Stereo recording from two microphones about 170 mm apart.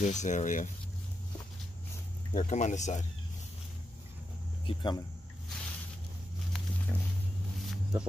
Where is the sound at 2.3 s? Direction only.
45° left (ahead or behind).